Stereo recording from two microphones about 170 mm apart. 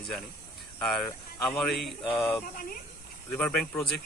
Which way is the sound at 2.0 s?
15° left (ahead or behind).